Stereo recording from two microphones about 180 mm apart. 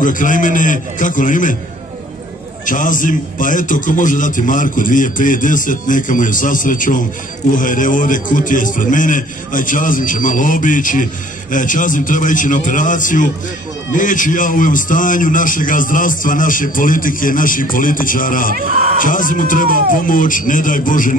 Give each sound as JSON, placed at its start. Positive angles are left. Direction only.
{"t": 0.0, "sound": "a man's voice", "side_deg": 45}
{"t": 2.6, "sound": "a man's voice", "side_deg": 45}
{"t": 18.5, "sound": "speech", "side_deg": -45}
{"t": 18.9, "sound": "a man's voice", "side_deg": 50}